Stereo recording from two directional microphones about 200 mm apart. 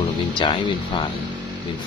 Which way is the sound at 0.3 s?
25° left (ahead or behind).